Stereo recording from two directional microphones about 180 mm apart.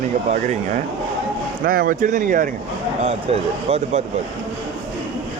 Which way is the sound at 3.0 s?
35° right (ahead or behind).